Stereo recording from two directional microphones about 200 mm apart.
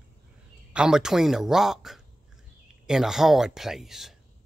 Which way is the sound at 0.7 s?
5° right (ahead or behind).